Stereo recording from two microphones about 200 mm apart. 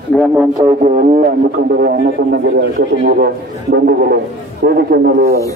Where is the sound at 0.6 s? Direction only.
25° right (ahead or behind).